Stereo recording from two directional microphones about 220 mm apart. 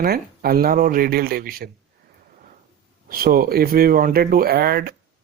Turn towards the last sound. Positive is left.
turn(degrees=-45)  # may be behind; listen again after turning